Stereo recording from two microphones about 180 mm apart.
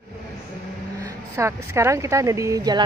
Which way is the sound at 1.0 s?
15° right (ahead or behind).